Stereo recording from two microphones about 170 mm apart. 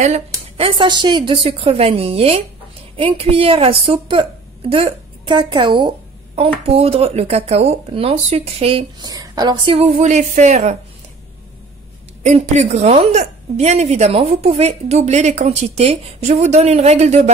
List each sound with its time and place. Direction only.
0.6 s a woman's voice: 30° right (ahead or behind)
9.1 s a woman's voice: 25° right (ahead or behind)
9.8 s speech: 45° right (ahead or behind)
12.2 s a woman's voice: 40° right (ahead or behind)